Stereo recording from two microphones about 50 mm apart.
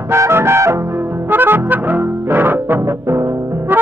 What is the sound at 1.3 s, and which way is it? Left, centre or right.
Music, right.